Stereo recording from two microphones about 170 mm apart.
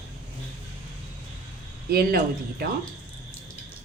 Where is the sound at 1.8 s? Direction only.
65° right (ahead or behind).